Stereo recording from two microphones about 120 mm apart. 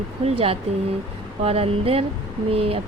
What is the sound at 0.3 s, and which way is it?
Speech, 55° right (ahead or behind).